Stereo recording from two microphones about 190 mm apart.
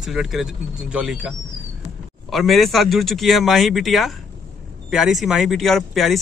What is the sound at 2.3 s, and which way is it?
Speech, centre (ahead or behind).